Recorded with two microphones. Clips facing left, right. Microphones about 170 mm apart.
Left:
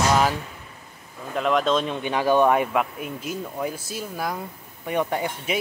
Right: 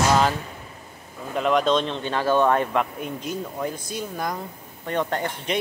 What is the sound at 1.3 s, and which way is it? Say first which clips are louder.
Speech: right 1 dB; centre (ahead or behind).